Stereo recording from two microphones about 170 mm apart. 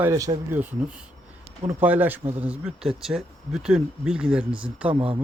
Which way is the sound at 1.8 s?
10° right (ahead or behind).